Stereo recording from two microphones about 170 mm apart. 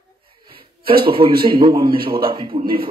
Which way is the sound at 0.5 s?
30° right (ahead or behind).